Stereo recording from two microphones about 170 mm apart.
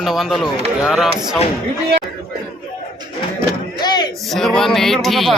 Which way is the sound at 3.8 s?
25° left (ahead or behind).